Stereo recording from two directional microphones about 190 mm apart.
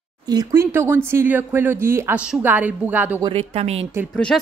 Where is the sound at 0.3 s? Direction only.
20° right (ahead or behind).